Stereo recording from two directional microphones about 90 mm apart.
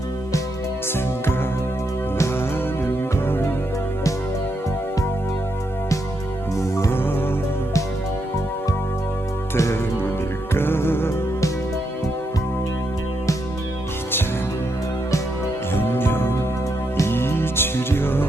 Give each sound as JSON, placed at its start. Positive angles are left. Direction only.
{"t": 6.7, "sound": "music", "side_deg": 30}
{"t": 9.6, "sound": "music", "side_deg": 30}
{"t": 15.7, "sound": "music", "side_deg": 25}